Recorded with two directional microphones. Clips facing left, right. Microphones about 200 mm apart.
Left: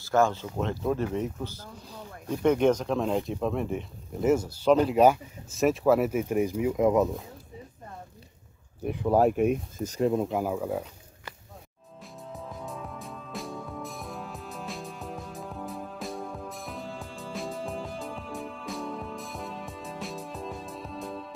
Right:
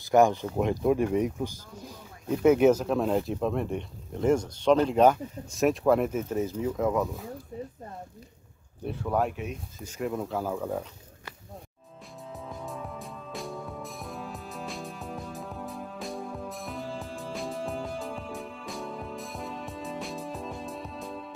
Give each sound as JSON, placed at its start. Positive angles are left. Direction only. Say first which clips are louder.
{"t": 0.0, "sound": "speech", "louder": "right 3 dB", "side_deg": -15}
{"t": 8.8, "sound": "speech", "louder": "left 4 dB", "side_deg": 15}
{"t": 9.3, "sound": "speech", "louder": "left 12 dB", "side_deg": 50}
{"t": 9.9, "sound": "speech", "louder": "left 5 dB", "side_deg": 25}
{"t": 12.3, "sound": "music", "louder": "even", "side_deg": 0}